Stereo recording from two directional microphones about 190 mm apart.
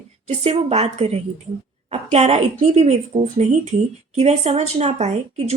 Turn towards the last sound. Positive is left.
turn(degrees=-35)  # may be behind; listen again after turning